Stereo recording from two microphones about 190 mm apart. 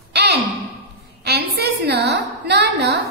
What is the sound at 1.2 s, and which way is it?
A woman's voice, 60° right (ahead or behind).